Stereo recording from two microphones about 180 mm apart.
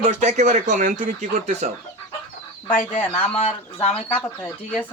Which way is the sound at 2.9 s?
35° left (ahead or behind).